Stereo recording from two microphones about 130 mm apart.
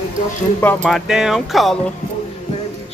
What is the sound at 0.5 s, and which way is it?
Speech, 15° left (ahead or behind).